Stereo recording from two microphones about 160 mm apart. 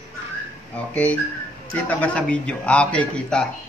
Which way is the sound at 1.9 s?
10° left (ahead or behind).